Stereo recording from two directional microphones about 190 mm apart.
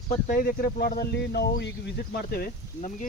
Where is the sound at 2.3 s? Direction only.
55° left (ahead or behind).